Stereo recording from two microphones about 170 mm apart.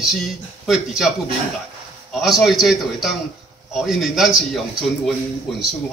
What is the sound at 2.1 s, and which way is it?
A man's voice, centre (ahead or behind).